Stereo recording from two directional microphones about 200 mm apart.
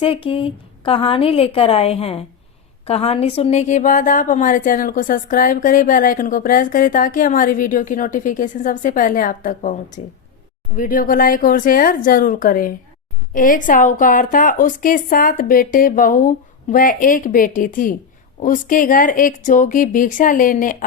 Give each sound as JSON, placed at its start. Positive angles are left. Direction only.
{"t": 0.0, "sound": "a woman's voice", "side_deg": 25}